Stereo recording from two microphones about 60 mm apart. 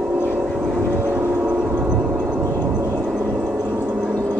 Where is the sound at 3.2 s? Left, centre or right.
Right.